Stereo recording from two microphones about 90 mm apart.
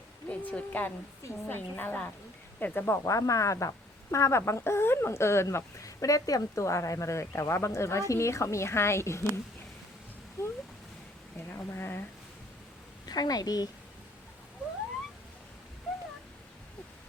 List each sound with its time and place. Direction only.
0.3 s speech: 15° left (ahead or behind)
13.1 s a woman's voice: 45° left (ahead or behind)